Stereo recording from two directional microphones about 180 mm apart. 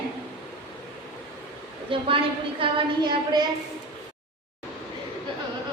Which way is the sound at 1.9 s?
30° right (ahead or behind).